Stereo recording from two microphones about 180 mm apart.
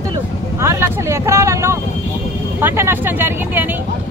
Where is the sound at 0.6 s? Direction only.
15° right (ahead or behind).